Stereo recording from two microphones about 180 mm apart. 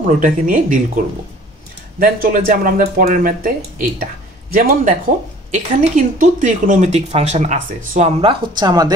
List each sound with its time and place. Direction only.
0.0 s speech: 45° right (ahead or behind)
2.0 s speech: 50° right (ahead or behind); by 8.9 s 20° right (ahead or behind)